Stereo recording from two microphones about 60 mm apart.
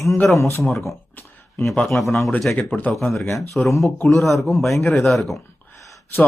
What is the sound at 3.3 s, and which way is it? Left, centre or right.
Speech, left.